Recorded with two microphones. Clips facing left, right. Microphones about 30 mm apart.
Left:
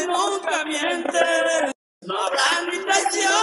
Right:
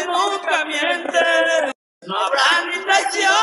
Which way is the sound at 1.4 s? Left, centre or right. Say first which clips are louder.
Right 3 dB; centre.